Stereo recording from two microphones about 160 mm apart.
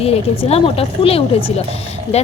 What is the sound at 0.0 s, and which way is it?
A woman's voice, 40° left (ahead or behind).